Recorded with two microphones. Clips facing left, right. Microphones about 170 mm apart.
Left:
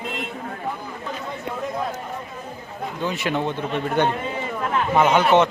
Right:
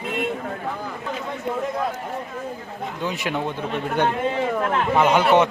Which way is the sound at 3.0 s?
15° right (ahead or behind).